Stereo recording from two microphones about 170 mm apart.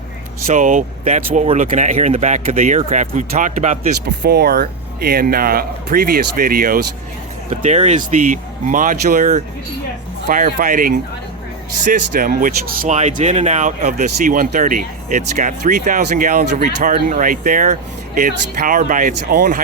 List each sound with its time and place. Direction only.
0.4 s speech: 50° right (ahead or behind)
4.0 s speech: 75° right (ahead or behind)
7.5 s speech: 40° right (ahead or behind)